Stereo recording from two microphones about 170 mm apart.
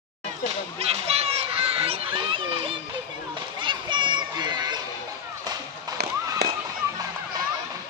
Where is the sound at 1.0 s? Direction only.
35° right (ahead or behind).